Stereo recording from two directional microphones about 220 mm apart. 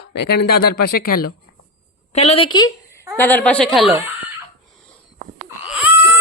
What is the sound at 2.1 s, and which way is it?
Speech, 30° left (ahead or behind).